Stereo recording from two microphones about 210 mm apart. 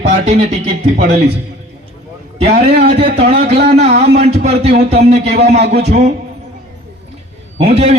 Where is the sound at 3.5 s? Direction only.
50° right (ahead or behind).